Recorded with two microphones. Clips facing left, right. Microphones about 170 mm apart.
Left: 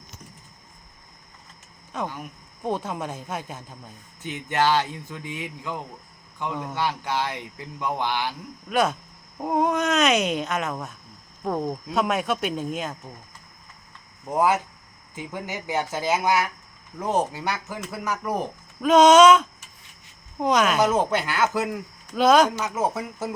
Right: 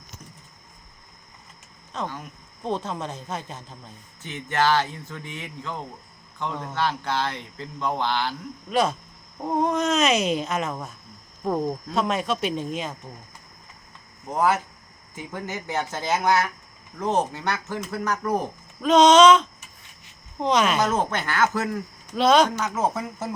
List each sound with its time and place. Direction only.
1.9 s speech: 10° left (ahead or behind)
8.7 s speech: centre (ahead or behind)
14.3 s speech: 15° left (ahead or behind)
22.1 s speech: centre (ahead or behind)